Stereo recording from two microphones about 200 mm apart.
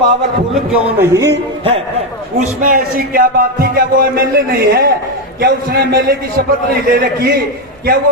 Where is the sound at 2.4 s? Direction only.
45° right (ahead or behind).